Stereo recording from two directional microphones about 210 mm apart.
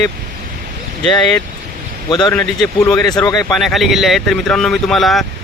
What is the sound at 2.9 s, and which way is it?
Speech, 20° left (ahead or behind).